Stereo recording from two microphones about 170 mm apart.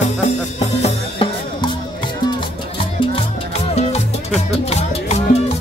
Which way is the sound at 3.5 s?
40° left (ahead or behind).